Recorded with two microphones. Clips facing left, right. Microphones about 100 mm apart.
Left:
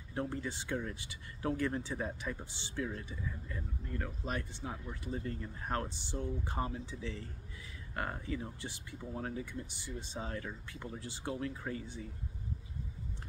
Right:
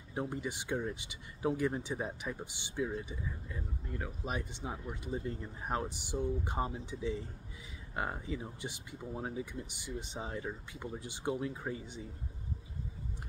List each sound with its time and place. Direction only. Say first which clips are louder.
0.1 s speech: right 1 dB; 15° right (ahead or behind)